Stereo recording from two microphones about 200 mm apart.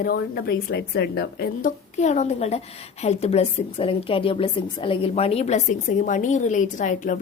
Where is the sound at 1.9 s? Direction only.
35° left (ahead or behind).